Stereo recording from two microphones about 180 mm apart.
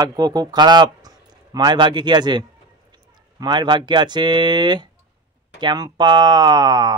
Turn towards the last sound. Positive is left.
turn(degrees=-25)  # may be behind; listen again after turning